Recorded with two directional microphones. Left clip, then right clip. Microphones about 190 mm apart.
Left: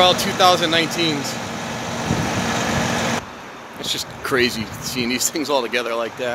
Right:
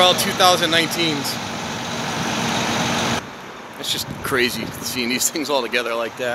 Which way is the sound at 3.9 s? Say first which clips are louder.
Left 1 dB; 20° left (ahead or behind).